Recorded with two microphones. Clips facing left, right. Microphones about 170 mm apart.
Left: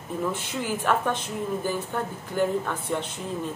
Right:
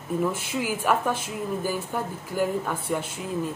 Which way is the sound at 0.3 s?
10° right (ahead or behind).